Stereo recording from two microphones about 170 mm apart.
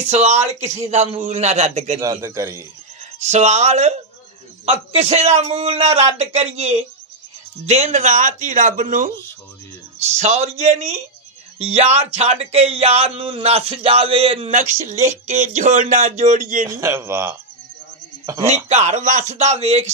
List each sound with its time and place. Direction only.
0.0 s speech: 40° right (ahead or behind)
2.0 s speech: 20° right (ahead or behind)
3.3 s speech: 40° right (ahead or behind)
14.5 s speech: 45° right (ahead or behind)
16.6 s speech: 15° right (ahead or behind)
18.5 s speech: 40° right (ahead or behind)